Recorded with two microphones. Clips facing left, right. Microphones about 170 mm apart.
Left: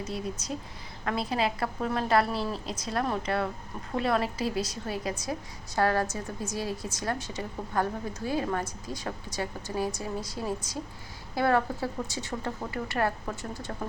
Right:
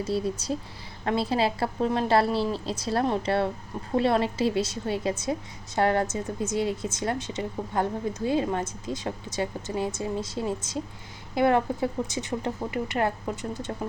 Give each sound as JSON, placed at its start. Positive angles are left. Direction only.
{"t": 0.0, "sound": "a woman's voice", "side_deg": -30}